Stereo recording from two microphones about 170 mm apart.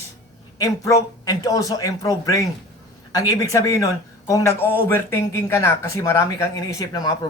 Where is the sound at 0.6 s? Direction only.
20° left (ahead or behind).